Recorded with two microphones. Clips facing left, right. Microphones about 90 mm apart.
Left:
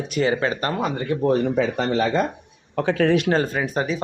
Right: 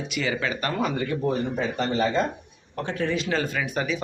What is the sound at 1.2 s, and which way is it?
Speech, 85° left.